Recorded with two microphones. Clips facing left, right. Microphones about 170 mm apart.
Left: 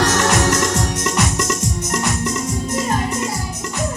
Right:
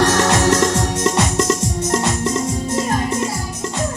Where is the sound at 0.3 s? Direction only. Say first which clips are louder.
Right 2 dB; 20° right (ahead or behind).